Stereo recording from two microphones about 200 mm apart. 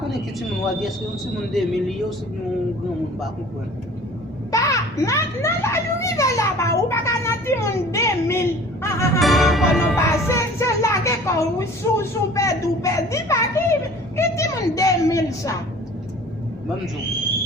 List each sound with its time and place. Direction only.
1.5 s speech: centre (ahead or behind)
4.5 s a child's voice: 15° left (ahead or behind)
9.2 s speech: centre (ahead or behind)
10.1 s music: 15° left (ahead or behind)
11.9 s a child's voice: 15° left (ahead or behind)
14.2 s a sound: 15° left (ahead or behind)